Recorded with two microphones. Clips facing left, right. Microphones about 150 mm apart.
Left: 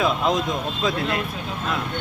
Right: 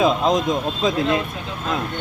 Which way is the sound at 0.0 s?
20° right (ahead or behind).